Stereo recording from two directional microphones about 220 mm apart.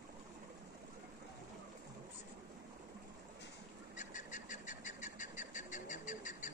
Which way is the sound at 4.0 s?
35° left (ahead or behind).